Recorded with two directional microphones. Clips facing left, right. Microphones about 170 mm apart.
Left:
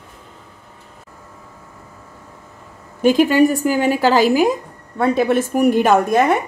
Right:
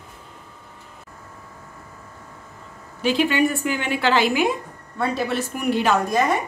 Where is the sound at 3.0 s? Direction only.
40° left (ahead or behind).